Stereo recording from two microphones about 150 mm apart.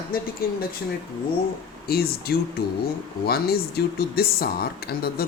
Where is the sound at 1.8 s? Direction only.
90° left.